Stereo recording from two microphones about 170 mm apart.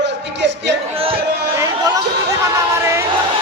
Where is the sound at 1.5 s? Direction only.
20° right (ahead or behind).